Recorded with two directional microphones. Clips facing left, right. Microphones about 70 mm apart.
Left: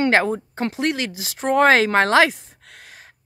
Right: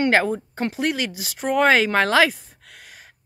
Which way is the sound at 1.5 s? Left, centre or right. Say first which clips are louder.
Left 2 dB; left.